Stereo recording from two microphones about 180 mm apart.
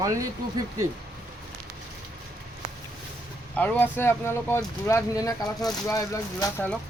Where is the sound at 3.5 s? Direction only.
10° left (ahead or behind).